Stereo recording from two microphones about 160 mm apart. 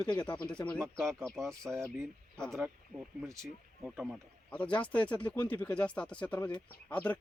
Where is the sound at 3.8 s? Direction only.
5° right (ahead or behind).